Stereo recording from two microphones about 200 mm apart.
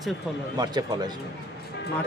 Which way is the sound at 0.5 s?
20° right (ahead or behind).